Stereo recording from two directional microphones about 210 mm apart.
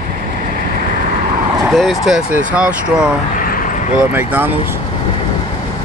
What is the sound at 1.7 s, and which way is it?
Speech, centre (ahead or behind).